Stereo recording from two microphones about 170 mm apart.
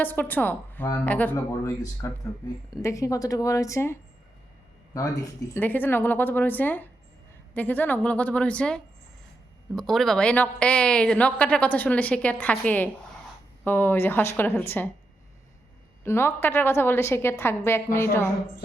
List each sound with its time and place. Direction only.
0.0 s a woman's voice: 10° left (ahead or behind)
4.9 s a woman's voice: 20° left (ahead or behind)
16.0 s a woman's voice: 15° left (ahead or behind)